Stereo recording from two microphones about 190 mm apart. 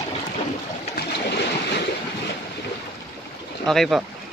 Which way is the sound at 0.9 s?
65° left (ahead or behind).